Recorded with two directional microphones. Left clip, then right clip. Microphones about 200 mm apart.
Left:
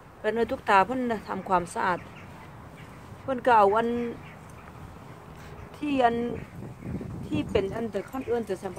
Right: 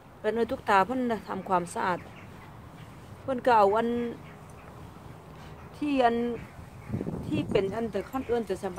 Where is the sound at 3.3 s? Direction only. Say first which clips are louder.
Left 2 dB; centre (ahead or behind).